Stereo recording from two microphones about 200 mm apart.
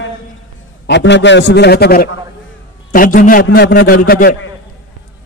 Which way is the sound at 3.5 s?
55° left (ahead or behind).